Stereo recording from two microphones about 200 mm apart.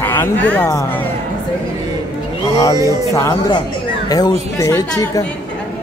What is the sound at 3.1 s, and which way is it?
Speech, 15° left (ahead or behind).